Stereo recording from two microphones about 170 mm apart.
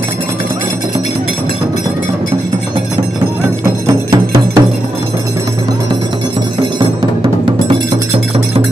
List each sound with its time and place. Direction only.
3.8 s music: 20° right (ahead or behind)